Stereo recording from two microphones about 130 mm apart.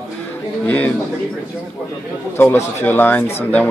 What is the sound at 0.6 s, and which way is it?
Speech, 10° left (ahead or behind).